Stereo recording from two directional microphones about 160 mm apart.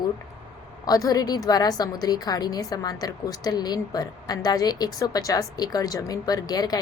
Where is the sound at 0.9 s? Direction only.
20° left (ahead or behind).